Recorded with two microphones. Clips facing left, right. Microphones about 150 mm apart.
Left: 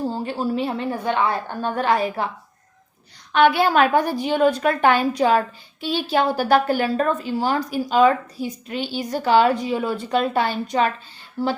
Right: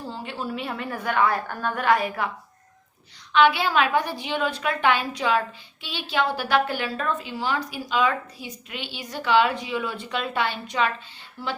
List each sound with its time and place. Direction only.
0.0 s a woman's voice: 40° left (ahead or behind)
3.3 s a woman's voice: 50° left (ahead or behind)